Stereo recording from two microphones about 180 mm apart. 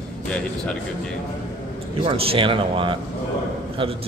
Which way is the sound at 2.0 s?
30° right (ahead or behind).